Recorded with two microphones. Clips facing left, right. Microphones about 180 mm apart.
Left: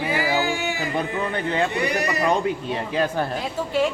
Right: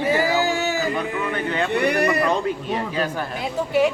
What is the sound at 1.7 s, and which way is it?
Speech, 60° right (ahead or behind).